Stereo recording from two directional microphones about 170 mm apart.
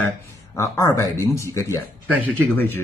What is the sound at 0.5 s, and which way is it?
Speech, 15° left (ahead or behind).